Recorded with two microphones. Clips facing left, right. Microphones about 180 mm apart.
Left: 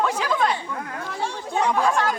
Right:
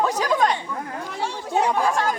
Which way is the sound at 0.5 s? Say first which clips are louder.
Right 1 dB; 15° right (ahead or behind).